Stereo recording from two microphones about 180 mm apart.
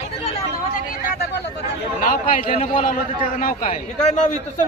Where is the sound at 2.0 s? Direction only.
50° left (ahead or behind).